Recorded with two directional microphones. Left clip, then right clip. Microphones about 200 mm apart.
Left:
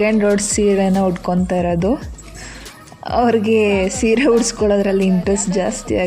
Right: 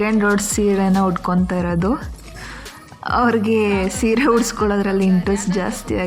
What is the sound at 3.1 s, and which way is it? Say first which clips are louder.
Speech: left 2 dB; 20° right (ahead or behind).